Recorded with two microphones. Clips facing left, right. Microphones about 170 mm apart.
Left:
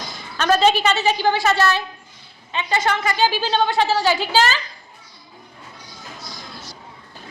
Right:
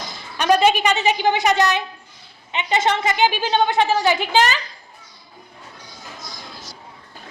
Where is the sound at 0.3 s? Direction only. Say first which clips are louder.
Right 1 dB; 15° right (ahead or behind).